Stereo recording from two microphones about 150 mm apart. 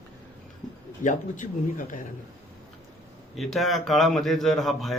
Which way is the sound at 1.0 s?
60° left (ahead or behind).